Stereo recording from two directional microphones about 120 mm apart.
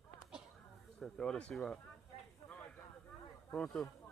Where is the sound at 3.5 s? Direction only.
5° left (ahead or behind).